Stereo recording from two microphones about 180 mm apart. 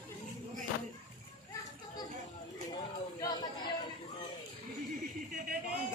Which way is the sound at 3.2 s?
20° left (ahead or behind).